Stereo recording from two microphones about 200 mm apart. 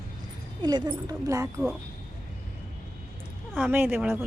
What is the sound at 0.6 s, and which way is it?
Speech, 20° right (ahead or behind).